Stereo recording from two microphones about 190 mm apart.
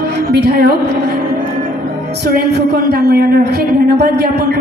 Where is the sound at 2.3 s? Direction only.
60° right (ahead or behind).